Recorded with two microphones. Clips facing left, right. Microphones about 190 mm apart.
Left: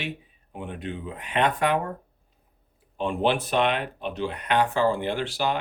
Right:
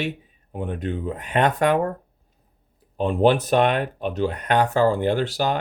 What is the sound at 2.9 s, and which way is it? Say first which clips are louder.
Speech: right 6 dB; 40° right (ahead or behind).